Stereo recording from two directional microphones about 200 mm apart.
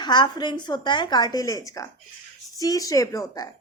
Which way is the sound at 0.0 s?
20° left (ahead or behind).